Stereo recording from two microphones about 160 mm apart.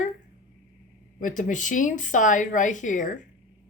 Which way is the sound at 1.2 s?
55° left (ahead or behind).